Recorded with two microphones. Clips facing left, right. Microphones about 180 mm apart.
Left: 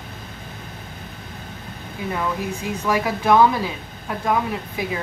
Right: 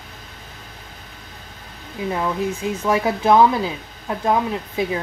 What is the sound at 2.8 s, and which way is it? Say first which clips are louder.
A woman's voice: right 2 dB; 25° right (ahead or behind).